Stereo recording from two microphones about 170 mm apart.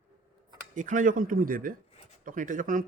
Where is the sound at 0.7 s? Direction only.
50° right (ahead or behind).